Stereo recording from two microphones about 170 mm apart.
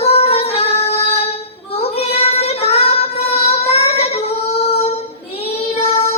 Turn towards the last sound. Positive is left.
turn(degrees=35)  # may be behind; listen again after turning